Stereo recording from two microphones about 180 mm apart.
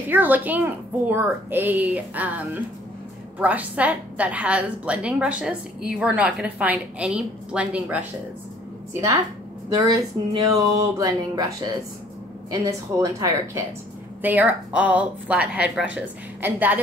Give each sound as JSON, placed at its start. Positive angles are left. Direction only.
{"t": 0.1, "sound": "a woman's voice", "side_deg": -10}
{"t": 9.8, "sound": "a woman's voice", "side_deg": -20}